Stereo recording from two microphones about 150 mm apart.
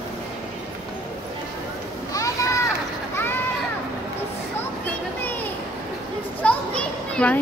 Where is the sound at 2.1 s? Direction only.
20° left (ahead or behind).